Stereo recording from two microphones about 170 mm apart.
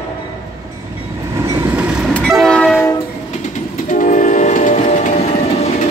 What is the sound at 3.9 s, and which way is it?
Train, 50° left (ahead or behind).